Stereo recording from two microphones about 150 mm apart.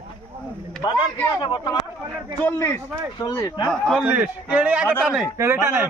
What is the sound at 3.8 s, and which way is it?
A man's voice, 5° right (ahead or behind).